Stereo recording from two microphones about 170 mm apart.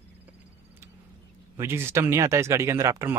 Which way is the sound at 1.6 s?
15° right (ahead or behind).